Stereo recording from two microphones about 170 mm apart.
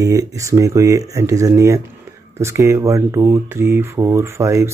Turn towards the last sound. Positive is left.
turn(degrees=-15)  # may be behind; listen again after turning